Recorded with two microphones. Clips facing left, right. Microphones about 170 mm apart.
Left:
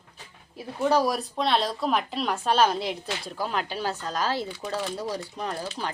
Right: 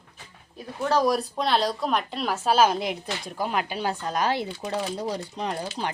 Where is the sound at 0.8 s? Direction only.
5° left (ahead or behind).